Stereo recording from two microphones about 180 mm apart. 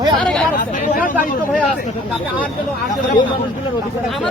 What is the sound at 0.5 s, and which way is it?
Speech, 50° left (ahead or behind).